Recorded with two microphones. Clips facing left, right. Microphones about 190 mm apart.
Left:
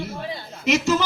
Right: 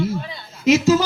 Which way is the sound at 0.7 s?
35° right (ahead or behind).